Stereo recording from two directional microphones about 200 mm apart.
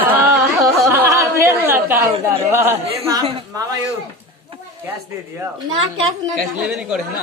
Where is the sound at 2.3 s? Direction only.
10° right (ahead or behind).